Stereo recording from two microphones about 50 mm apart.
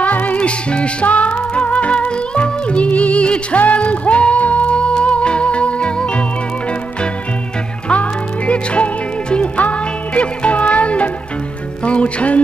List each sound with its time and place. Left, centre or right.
0.0 s music: left
7.9 s music: left